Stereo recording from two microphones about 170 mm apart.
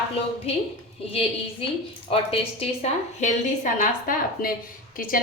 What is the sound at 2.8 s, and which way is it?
A woman's voice, 45° left (ahead or behind).